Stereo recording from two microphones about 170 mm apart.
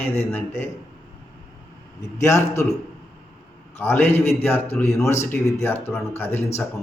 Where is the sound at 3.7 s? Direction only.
10° left (ahead or behind).